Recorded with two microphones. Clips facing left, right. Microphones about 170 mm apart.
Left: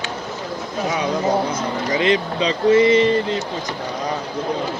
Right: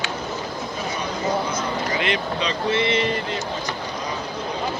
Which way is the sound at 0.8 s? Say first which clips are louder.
Left 9 dB; 90° left.